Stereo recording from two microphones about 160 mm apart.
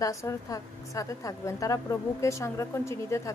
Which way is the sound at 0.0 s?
20° left (ahead or behind).